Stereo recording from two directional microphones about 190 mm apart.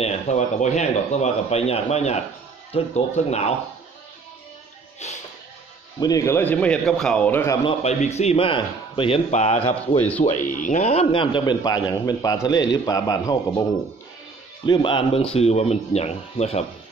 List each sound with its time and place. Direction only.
0.0 s a man's voice: 35° left (ahead or behind)
5.0 s music: 35° left (ahead or behind)
5.9 s a man's voice: 20° left (ahead or behind)
7.6 s a man's voice: 35° left (ahead or behind); by 13.4 s 20° left (ahead or behind)
14.7 s a man's voice: 25° left (ahead or behind)